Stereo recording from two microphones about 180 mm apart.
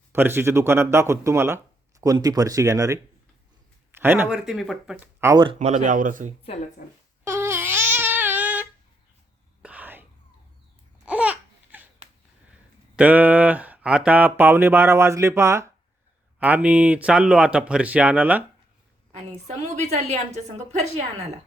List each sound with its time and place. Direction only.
0.1 s a man's voice: 10° right (ahead or behind)
4.4 s speech: centre (ahead or behind)
4.9 s speech: 15° right (ahead or behind)
5.5 s speech: 40° right (ahead or behind)
6.8 s speech: 55° left (ahead or behind)
7.3 s babbling: 15° right (ahead or behind)
9.6 s whispering: 10° right (ahead or behind)
11.0 s babbling: 5° right (ahead or behind)
13.0 s speech: 10° right (ahead or behind)
19.1 s a woman's voice: 35° right (ahead or behind)